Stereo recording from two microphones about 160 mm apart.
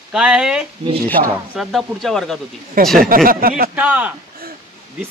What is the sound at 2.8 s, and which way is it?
Speech, 65° right (ahead or behind).